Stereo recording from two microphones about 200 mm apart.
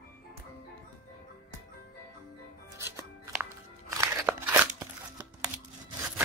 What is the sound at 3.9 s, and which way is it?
Crunch, 15° right (ahead or behind).